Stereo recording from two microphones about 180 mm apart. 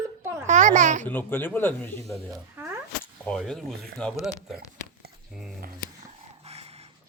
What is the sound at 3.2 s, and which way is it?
Speech, 5° left (ahead or behind).